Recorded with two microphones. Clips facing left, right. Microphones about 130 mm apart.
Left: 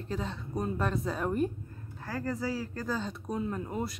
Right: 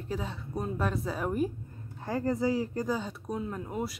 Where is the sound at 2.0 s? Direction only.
20° right (ahead or behind).